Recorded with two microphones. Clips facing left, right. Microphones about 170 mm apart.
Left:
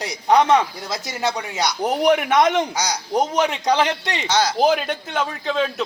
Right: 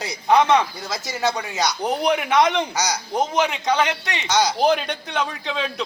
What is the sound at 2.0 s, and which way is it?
Speech, 45° left (ahead or behind).